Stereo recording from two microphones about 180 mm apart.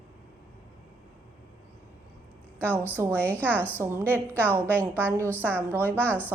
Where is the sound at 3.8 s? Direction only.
10° right (ahead or behind).